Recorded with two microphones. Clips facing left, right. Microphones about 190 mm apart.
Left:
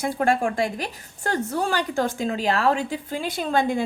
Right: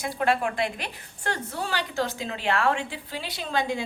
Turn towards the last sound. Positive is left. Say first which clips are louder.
# left 5 dB
turn(degrees=50)  # may be behind; listen again after turning